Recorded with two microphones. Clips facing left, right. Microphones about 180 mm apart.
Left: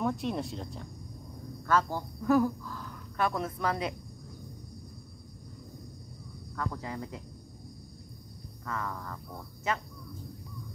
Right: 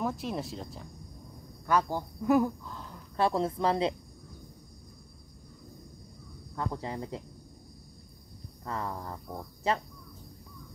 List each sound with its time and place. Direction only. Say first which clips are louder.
0.0 s speech: left 2 dB; centre (ahead or behind)
1.7 s speech: right 1 dB; 15° right (ahead or behind)
6.5 s speech: right 2 dB; 25° right (ahead or behind)
8.6 s speech: right 1 dB; 30° right (ahead or behind)